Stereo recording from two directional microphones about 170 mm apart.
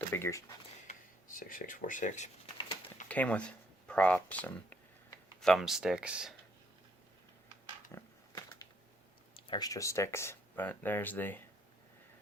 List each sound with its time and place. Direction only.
0.1 s speech: 15° left (ahead or behind)
0.9 s speech: 55° left (ahead or behind)
3.1 s speech: 10° left (ahead or behind)
9.3 s speech: 25° left (ahead or behind)